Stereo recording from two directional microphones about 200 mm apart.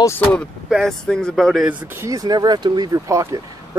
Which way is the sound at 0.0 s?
10° left (ahead or behind).